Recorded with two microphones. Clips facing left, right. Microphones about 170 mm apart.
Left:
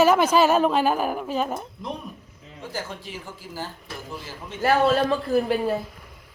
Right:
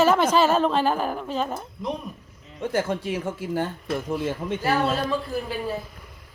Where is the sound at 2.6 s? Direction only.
55° right (ahead or behind).